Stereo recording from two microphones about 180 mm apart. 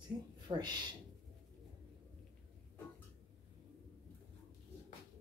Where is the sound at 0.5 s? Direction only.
25° right (ahead or behind).